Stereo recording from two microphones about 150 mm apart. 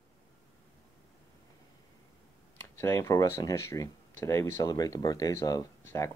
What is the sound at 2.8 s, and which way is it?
Speech, 20° left (ahead or behind).